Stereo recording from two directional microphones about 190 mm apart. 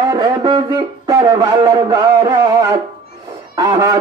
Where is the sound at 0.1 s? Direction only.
25° right (ahead or behind).